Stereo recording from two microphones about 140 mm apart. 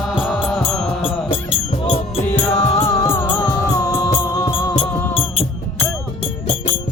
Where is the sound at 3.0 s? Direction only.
20° left (ahead or behind).